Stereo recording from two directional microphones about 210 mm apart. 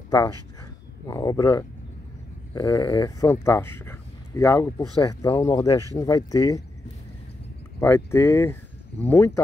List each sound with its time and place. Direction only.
1.0 s speech: 15° left (ahead or behind)
7.8 s speech: 10° left (ahead or behind)